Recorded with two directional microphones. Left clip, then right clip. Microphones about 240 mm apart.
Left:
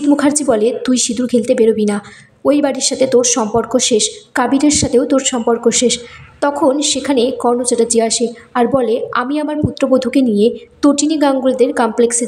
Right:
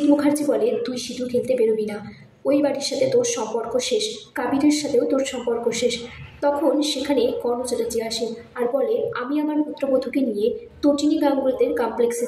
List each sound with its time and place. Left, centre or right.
0.1 s a woman's voice: left